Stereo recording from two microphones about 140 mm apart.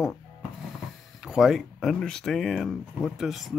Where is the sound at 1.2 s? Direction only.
5° right (ahead or behind).